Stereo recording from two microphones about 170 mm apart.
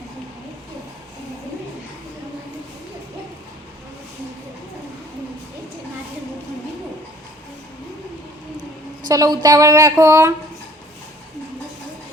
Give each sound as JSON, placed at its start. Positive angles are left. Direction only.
{"t": 9.0, "sound": "speech", "side_deg": -20}